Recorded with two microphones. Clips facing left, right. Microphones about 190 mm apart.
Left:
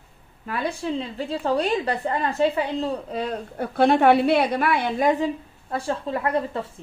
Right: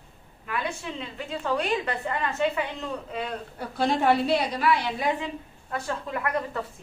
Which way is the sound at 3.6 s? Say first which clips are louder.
Left 7 dB; 60° left (ahead or behind).